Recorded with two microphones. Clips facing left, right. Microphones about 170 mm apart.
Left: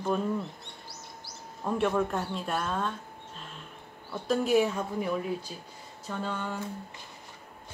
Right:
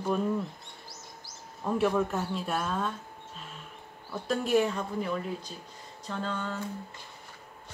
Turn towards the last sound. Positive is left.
turn(degrees=5)  # may be behind; listen again after turning